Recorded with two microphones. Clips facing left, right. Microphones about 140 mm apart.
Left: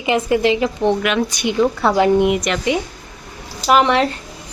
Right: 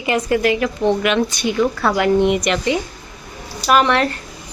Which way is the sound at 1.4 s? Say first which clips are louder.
Left 4 dB; 20° left (ahead or behind).